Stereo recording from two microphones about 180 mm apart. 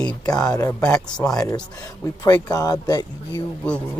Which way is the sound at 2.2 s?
20° left (ahead or behind).